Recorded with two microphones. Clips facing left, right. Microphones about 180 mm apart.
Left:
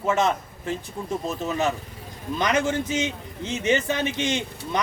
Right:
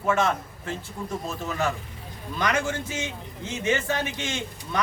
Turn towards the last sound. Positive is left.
turn(degrees=20)  # may be behind; listen again after turning